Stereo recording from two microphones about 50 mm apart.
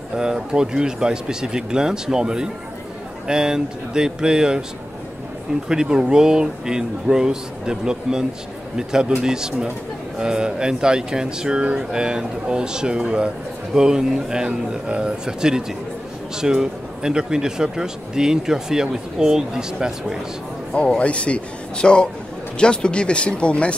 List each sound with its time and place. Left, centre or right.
0.1 s speech: centre
5.7 s speech: centre
20.8 s a man's voice: left